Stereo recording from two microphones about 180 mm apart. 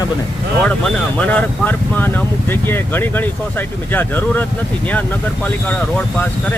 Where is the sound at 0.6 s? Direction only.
10° left (ahead or behind).